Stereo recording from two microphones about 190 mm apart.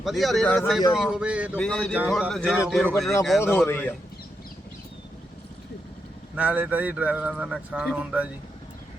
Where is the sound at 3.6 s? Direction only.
10° left (ahead or behind).